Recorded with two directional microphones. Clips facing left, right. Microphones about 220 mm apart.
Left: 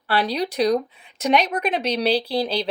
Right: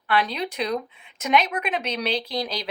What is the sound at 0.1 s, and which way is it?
Speech, 35° left (ahead or behind).